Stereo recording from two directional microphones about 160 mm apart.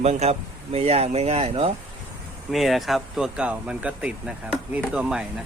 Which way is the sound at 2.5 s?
Centre (ahead or behind).